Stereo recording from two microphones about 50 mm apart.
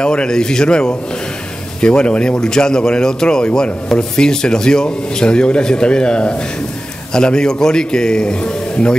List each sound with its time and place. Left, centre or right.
0.0 s speech: centre